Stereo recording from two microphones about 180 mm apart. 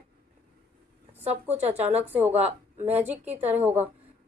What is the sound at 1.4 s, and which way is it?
A woman's voice, 10° right (ahead or behind).